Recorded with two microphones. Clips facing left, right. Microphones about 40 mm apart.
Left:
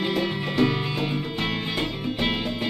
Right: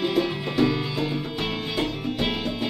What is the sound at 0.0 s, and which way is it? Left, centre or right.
Music, left.